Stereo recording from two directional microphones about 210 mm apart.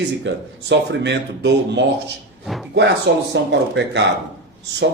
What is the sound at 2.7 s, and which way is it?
A man's voice, 55° right (ahead or behind).